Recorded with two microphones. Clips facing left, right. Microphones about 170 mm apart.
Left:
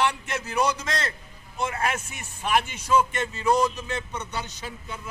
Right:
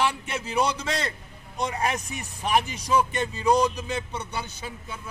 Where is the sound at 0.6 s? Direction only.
30° right (ahead or behind).